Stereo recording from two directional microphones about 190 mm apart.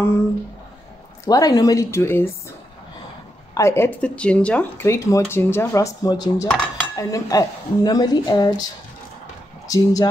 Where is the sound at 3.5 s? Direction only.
15° left (ahead or behind).